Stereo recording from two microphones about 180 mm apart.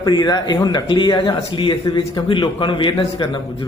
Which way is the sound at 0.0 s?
20° left (ahead or behind).